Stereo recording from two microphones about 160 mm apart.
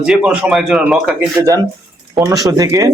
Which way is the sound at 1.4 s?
20° right (ahead or behind).